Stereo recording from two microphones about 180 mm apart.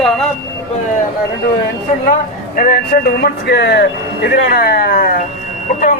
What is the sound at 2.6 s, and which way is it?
Speech, 55° left (ahead or behind).